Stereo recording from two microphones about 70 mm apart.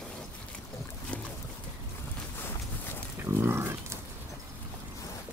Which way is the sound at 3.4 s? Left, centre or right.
Right.